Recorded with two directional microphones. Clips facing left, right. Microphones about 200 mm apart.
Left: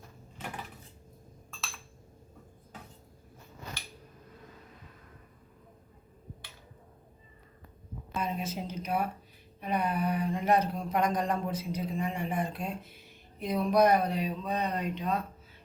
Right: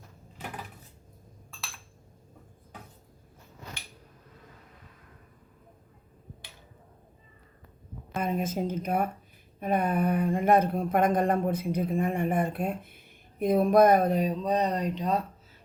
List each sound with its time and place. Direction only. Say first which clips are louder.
8.1 s speech: right 5 dB; 50° right (ahead or behind)